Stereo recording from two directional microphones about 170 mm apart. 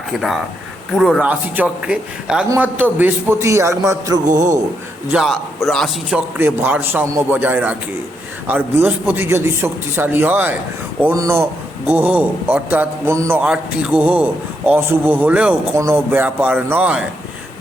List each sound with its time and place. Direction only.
0.2 s a man's voice: centre (ahead or behind); by 4.2 s 20° right (ahead or behind)
4.3 s speech: 45° right (ahead or behind)
5.1 s a man's voice: centre (ahead or behind)